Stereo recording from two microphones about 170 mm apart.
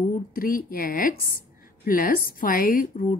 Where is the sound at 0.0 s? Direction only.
55° left (ahead or behind).